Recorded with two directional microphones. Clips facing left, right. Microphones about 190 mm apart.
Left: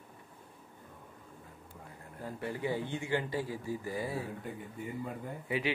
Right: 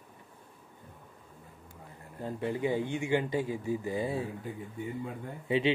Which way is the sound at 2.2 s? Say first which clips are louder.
Right 5 dB; 20° right (ahead or behind).